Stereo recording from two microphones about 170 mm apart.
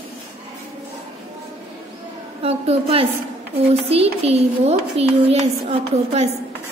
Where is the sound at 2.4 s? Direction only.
35° right (ahead or behind).